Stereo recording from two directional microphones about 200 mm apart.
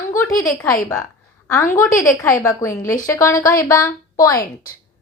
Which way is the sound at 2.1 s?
15° left (ahead or behind).